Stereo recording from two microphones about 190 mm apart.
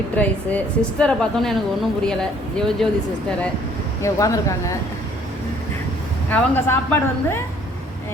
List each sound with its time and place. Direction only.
0.2 s a woman's voice: 5° left (ahead or behind)
4.0 s a woman's voice: 15° left (ahead or behind)
6.3 s a woman's voice: 10° left (ahead or behind)